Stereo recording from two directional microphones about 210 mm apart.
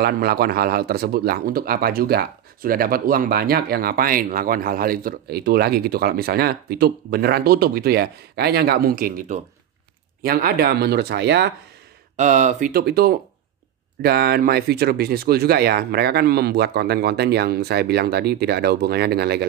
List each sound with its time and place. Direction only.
0.0 s speech: 45° right (ahead or behind)
12.2 s speech: 35° right (ahead or behind)